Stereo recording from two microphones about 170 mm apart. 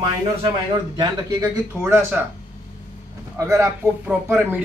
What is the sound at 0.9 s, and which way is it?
Speech, 20° right (ahead or behind).